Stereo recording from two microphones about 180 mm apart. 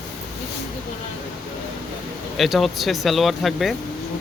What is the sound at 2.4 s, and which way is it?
Speech, centre (ahead or behind).